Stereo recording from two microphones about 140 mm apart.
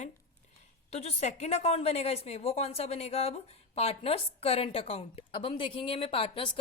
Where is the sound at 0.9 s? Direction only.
50° left (ahead or behind).